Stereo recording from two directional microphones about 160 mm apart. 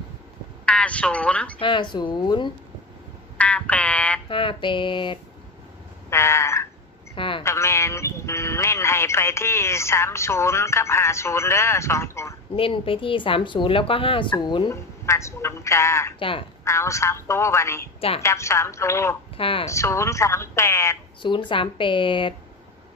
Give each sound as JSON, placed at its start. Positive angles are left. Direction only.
{"t": 0.7, "sound": "speech", "side_deg": 5}
{"t": 1.6, "sound": "speech", "side_deg": 30}
{"t": 3.3, "sound": "a sound", "side_deg": 10}
{"t": 4.3, "sound": "speech", "side_deg": 30}
{"t": 6.0, "sound": "frog", "side_deg": 15}
{"t": 7.2, "sound": "a sound", "side_deg": 30}
{"t": 7.4, "sound": "a man's voice", "side_deg": 15}
{"t": 12.5, "sound": "speech", "side_deg": 35}
{"t": 14.7, "sound": "a woman's voice", "side_deg": 20}
{"t": 16.2, "sound": "speech", "side_deg": 35}
{"t": 16.6, "sound": "a woman's voice", "side_deg": 20}
{"t": 19.3, "sound": "speech", "side_deg": 35}
{"t": 19.7, "sound": "a woman's voice", "side_deg": 20}
{"t": 21.2, "sound": "speech", "side_deg": 30}